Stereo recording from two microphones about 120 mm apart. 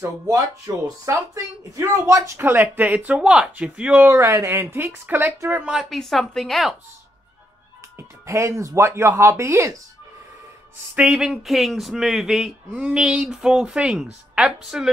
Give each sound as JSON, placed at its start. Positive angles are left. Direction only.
{"t": 0.8, "sound": "speech", "side_deg": -25}
{"t": 4.1, "sound": "speech", "side_deg": -25}
{"t": 5.9, "sound": "speech", "side_deg": 0}
{"t": 8.3, "sound": "speech", "side_deg": -25}
{"t": 11.0, "sound": "speech", "side_deg": -5}